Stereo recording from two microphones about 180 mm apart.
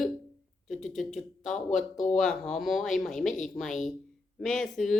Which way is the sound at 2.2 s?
Centre (ahead or behind).